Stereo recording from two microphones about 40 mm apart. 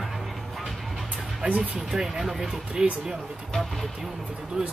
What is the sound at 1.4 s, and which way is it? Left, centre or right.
Speech, right.